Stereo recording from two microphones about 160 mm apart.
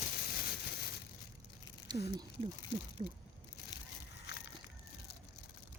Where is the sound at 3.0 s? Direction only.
35° right (ahead or behind).